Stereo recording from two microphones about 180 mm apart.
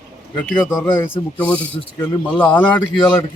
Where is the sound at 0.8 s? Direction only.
10° left (ahead or behind).